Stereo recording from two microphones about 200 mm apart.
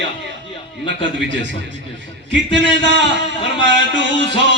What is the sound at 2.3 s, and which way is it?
Music, 65° right (ahead or behind).